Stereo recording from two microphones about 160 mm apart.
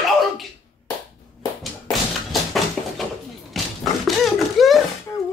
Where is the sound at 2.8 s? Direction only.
5° left (ahead or behind).